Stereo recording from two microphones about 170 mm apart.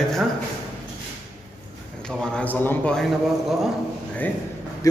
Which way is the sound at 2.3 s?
10° left (ahead or behind).